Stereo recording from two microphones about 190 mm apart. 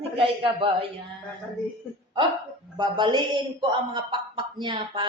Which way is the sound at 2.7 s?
25° right (ahead or behind).